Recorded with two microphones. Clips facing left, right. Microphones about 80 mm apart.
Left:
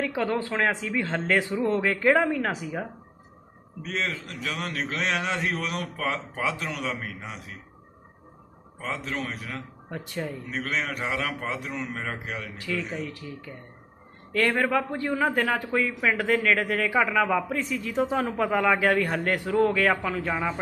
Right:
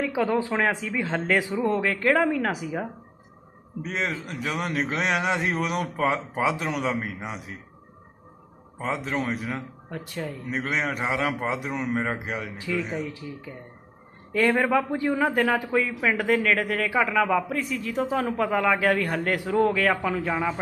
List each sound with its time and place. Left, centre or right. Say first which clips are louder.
0.0 s a man's voice: right 3 dB; centre
3.8 s a man's voice: right 1 dB; centre
8.8 s a man's voice: right 4 dB; centre
9.9 s speech: even; centre
10.4 s a man's voice: right 5 dB; centre